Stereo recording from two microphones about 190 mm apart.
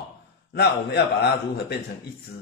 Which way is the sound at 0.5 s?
60° left (ahead or behind).